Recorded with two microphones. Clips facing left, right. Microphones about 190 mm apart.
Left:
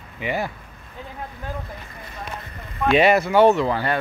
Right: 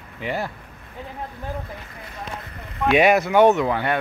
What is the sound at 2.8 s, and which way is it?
Speech, 10° right (ahead or behind).